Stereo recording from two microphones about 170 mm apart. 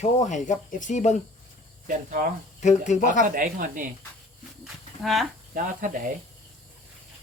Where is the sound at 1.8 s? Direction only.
50° right (ahead or behind).